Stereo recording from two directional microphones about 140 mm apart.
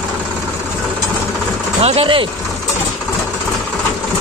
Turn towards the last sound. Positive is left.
turn(degrees=-40)  # may be behind; listen again after turning